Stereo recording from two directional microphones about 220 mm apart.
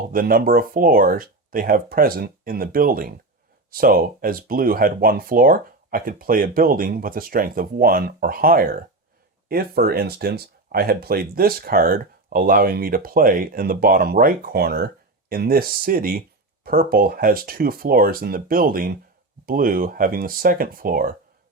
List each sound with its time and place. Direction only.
0.1 s speech: 40° right (ahead or behind)